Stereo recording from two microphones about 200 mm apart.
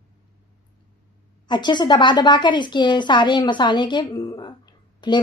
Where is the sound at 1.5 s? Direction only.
20° left (ahead or behind).